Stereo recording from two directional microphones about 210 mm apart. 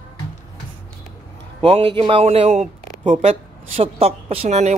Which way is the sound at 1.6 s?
25° right (ahead or behind).